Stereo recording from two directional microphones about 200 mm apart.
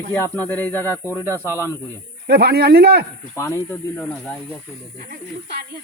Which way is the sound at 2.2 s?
55° right (ahead or behind).